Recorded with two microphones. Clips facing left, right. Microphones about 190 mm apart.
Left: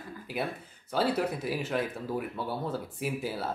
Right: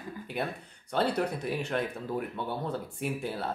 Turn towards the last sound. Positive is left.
turn(degrees=5)  # may be behind; listen again after turning